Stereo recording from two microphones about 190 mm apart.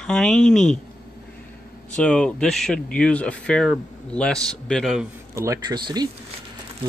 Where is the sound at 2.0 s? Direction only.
5° left (ahead or behind).